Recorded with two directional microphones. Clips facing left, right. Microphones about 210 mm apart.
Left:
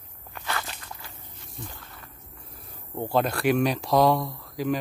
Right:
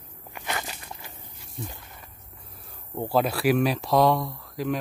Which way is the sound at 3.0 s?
5° right (ahead or behind).